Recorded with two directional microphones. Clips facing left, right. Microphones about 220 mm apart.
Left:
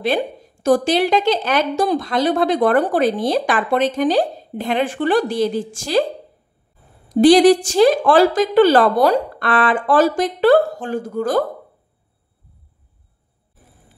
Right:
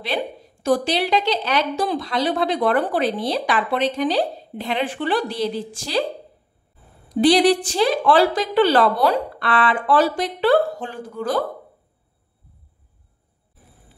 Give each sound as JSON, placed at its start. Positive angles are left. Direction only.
{"t": 0.0, "sound": "a woman's voice", "side_deg": 45}
{"t": 7.1, "sound": "a woman's voice", "side_deg": 45}